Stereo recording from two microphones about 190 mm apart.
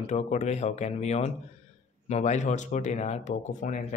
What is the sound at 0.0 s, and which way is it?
Speech, 40° left (ahead or behind).